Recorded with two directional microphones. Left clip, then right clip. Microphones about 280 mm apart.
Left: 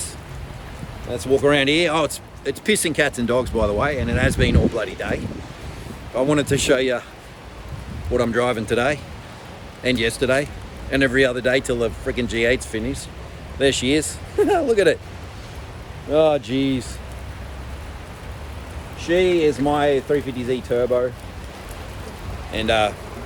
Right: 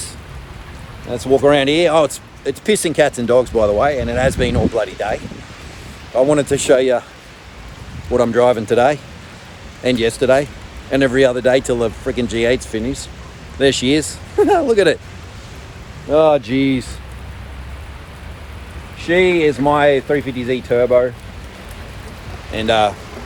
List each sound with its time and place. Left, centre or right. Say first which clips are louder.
1.4 s speech: right 5 dB; centre
8.1 s speech: right 7 dB; centre
16.1 s speech: right 5 dB; centre
18.9 s speech: right 4 dB; right
22.5 s speech: right 4 dB; centre